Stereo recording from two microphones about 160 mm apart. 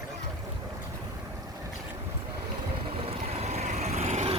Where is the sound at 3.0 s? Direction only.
40° right (ahead or behind).